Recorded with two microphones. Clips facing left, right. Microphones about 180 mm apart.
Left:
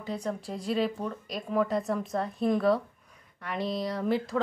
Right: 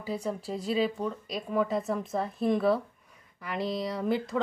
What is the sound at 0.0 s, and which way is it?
Speech, 5° right (ahead or behind).